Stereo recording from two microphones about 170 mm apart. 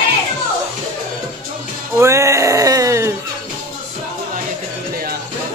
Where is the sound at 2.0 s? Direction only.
15° right (ahead or behind).